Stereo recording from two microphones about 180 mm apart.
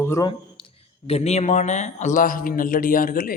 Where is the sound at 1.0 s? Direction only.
35° left (ahead or behind); by 3.3 s 50° left (ahead or behind).